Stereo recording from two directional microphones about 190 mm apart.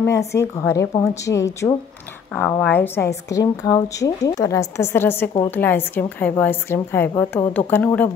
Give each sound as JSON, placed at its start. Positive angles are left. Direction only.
{"t": 0.0, "sound": "a woman's voice", "side_deg": 15}